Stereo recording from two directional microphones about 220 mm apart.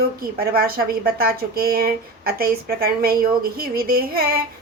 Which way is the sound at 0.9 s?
45° right (ahead or behind).